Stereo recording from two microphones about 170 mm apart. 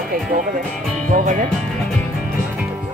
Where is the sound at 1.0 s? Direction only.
50° right (ahead or behind).